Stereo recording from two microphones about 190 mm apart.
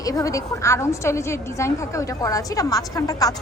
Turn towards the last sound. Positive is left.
turn(degrees=20)  # may be behind; listen again after turning